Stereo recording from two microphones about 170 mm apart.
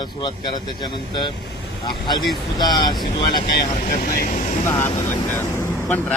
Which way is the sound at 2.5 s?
25° left (ahead or behind).